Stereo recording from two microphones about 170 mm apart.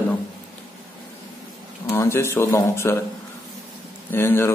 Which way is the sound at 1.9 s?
15° left (ahead or behind).